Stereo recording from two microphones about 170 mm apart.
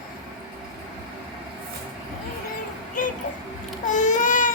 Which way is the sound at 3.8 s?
45° left (ahead or behind).